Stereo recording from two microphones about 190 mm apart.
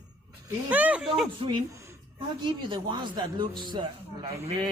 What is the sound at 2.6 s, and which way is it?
A man's voice, 25° right (ahead or behind).